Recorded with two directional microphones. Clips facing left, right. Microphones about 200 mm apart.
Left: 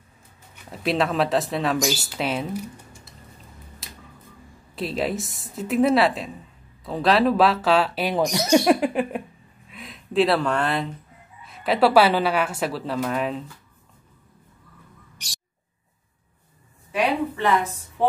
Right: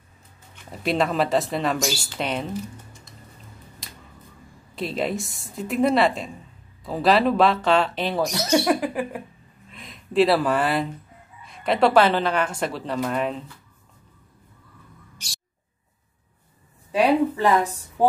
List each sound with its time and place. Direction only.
0.7 s speech: centre (ahead or behind)
3.8 s a sound: centre (ahead or behind)
4.7 s speech: centre (ahead or behind); by 9.2 s 25° left (ahead or behind)
9.7 s speech: centre (ahead or behind)
16.9 s a woman's voice: 35° right (ahead or behind)